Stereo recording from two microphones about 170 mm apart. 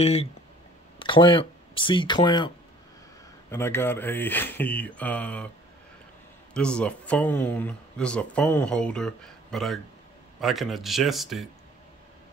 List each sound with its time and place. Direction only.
0.0 s speech: 40° left (ahead or behind)
3.4 s speech: 15° left (ahead or behind)
6.5 s speech: 5° left (ahead or behind)